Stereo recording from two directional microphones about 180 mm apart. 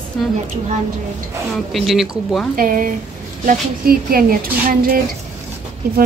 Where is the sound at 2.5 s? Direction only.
50° right (ahead or behind).